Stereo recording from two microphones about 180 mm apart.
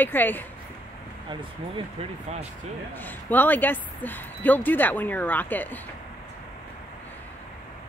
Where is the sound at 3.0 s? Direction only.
10° left (ahead or behind).